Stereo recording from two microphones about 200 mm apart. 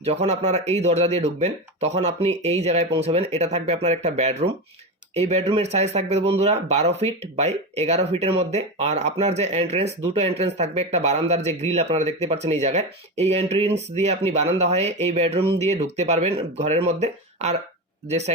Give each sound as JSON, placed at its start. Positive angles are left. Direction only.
{"t": 0.0, "sound": "speech", "side_deg": -30}